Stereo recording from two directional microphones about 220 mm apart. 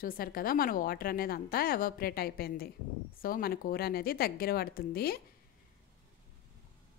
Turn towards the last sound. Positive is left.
turn(degrees=45)  # may be behind; listen again after turning